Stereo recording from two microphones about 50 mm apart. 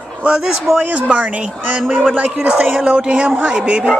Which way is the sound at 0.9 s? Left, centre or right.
Right.